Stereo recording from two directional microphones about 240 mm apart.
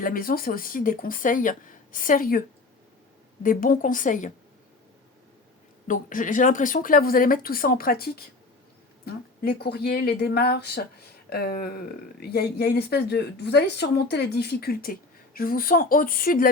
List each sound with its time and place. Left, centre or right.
0.0 s speech: left
3.4 s speech: left
5.9 s speech: left